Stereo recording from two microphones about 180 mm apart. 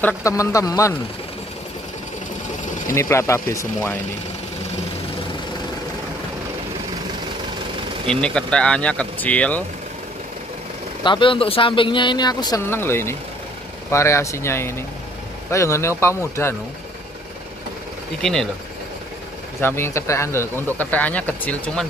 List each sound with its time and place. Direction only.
0.0 s speech: 15° left (ahead or behind)
2.9 s speech: 15° left (ahead or behind)
8.1 s speech: 5° left (ahead or behind)
11.1 s speech: 30° left (ahead or behind)
18.2 s speech: centre (ahead or behind)
19.6 s speech: 15° left (ahead or behind)